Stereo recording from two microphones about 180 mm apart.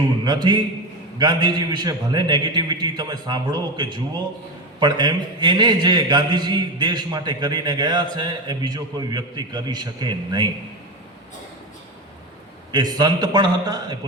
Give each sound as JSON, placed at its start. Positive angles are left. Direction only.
{"t": 0.3, "sound": "a man's voice", "side_deg": -25}
{"t": 12.7, "sound": "a man's voice", "side_deg": -25}